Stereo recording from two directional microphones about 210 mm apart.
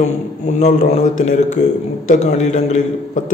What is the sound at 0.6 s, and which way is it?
A man's voice, 30° left (ahead or behind).